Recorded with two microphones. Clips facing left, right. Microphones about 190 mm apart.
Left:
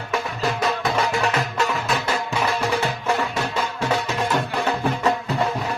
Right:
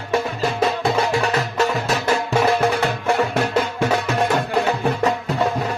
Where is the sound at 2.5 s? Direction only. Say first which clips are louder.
Right 5 dB; 55° right (ahead or behind).